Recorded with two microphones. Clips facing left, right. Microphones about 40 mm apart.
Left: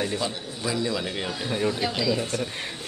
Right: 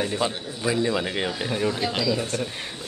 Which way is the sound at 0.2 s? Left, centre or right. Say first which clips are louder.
Right 3 dB; right.